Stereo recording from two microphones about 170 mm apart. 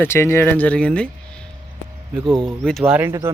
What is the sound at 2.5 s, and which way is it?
Speech, centre (ahead or behind).